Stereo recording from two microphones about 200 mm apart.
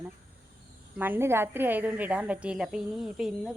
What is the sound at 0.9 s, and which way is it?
A woman's voice, 10° right (ahead or behind).